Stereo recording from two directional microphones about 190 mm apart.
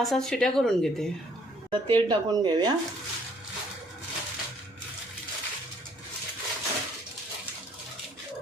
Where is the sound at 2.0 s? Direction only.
20° right (ahead or behind).